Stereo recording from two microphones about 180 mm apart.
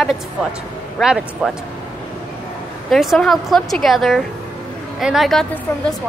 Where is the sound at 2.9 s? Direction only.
Centre (ahead or behind).